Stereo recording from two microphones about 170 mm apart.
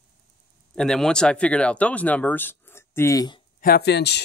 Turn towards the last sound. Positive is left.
turn(degrees=80)